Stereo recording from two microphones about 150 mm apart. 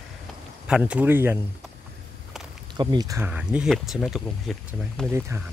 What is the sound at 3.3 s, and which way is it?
Speech, 5° right (ahead or behind).